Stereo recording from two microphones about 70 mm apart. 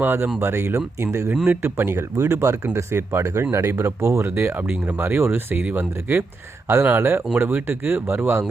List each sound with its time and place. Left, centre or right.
0.0 s speech: right
4.5 s speech: right